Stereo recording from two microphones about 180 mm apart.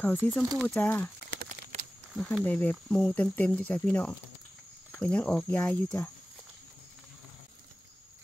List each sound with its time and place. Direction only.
0.0 s speech: 10° left (ahead or behind)
1.7 s a sound: 35° right (ahead or behind)
2.1 s speech: 5° left (ahead or behind)